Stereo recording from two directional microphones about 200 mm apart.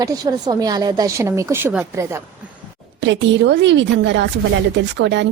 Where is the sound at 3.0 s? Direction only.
65° right (ahead or behind).